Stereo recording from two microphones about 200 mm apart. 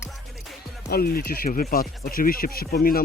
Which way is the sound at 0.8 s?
50° left (ahead or behind).